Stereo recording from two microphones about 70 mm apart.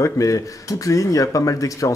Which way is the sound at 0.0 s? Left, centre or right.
Left.